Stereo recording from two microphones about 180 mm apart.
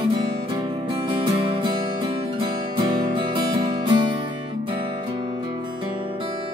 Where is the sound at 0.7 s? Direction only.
30° right (ahead or behind).